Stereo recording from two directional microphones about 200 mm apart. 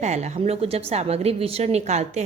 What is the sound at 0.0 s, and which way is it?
A woman's voice, 35° right (ahead or behind).